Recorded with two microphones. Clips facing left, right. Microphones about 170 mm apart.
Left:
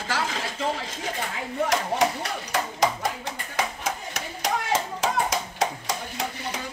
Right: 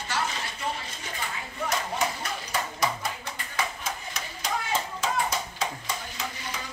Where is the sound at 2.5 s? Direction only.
90° left.